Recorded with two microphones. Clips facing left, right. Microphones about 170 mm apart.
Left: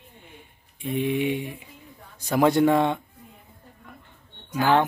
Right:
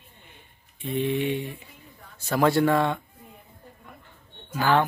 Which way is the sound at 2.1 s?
15° left (ahead or behind).